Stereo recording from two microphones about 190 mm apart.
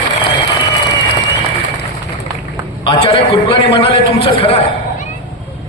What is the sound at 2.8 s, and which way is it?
A man's voice, 30° left (ahead or behind).